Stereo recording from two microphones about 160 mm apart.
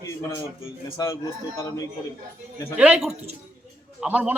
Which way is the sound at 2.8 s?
5° right (ahead or behind).